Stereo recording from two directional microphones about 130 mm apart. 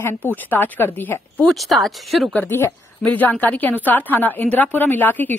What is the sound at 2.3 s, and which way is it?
A woman's voice, 15° left (ahead or behind).